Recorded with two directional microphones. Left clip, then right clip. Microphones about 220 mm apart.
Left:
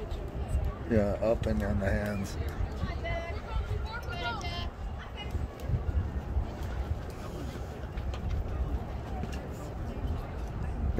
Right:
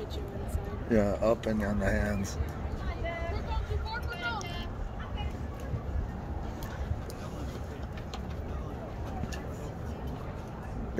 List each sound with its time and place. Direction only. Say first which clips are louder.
0.9 s speech: right 1 dB; 20° right (ahead or behind)